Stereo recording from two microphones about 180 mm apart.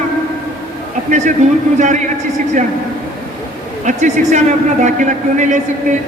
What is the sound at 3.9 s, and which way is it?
A man's voice, 40° right (ahead or behind).